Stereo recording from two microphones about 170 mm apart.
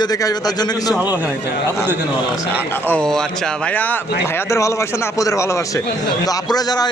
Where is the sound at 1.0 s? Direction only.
10° right (ahead or behind).